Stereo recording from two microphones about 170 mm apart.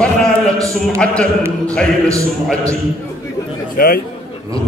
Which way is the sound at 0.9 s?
5° left (ahead or behind).